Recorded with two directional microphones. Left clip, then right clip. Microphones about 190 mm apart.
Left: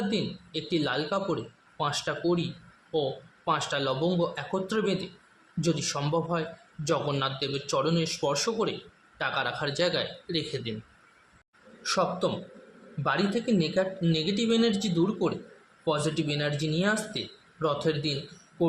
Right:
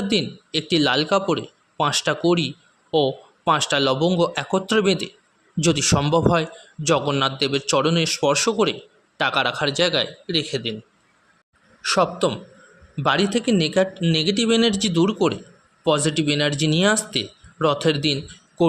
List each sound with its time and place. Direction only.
0.1 s a man's voice: 45° right (ahead or behind)
11.8 s a man's voice: 45° right (ahead or behind)